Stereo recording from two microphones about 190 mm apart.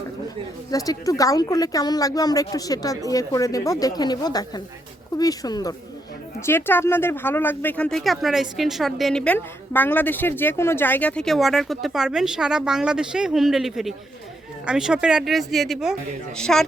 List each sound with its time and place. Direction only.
0.7 s a woman's voice: 20° left (ahead or behind); by 16.6 s 5° left (ahead or behind)